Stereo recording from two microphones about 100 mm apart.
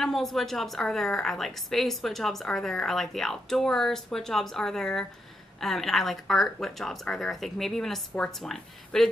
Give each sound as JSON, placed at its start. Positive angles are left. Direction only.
{"t": 0.0, "sound": "a woman's voice", "side_deg": 0}